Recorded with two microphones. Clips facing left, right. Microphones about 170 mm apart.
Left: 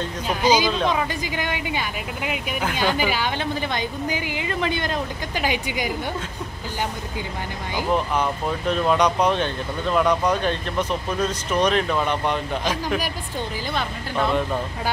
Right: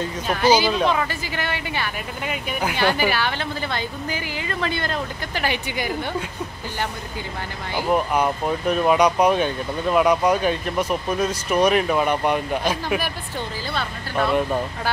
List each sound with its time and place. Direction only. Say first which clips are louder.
0.3 s a woman's voice: right 2 dB; 15° left (ahead or behind)
7.9 s speech: right 3 dB; 10° right (ahead or behind)